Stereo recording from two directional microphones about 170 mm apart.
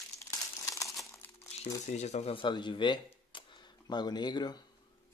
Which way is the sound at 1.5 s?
35° left (ahead or behind).